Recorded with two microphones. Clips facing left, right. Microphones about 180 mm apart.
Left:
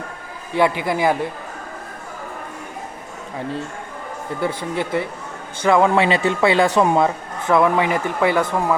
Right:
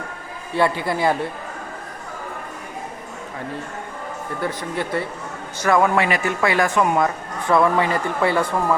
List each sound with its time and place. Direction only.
0.5 s speech: 15° left (ahead or behind)
4.4 s speech: 25° left (ahead or behind)